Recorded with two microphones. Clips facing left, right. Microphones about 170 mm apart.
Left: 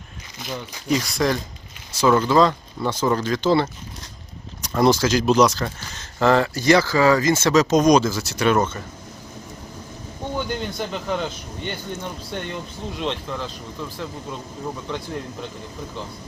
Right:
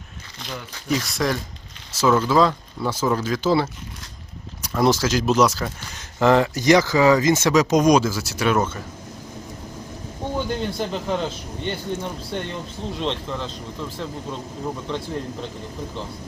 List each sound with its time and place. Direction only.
0.3 s speech: 10° left (ahead or behind)
0.9 s speech: centre (ahead or behind)
4.7 s speech: centre (ahead or behind)
10.3 s speech: centre (ahead or behind)